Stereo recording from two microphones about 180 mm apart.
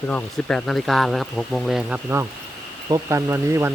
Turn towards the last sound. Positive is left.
turn(degrees=-15)  # may be behind; listen again after turning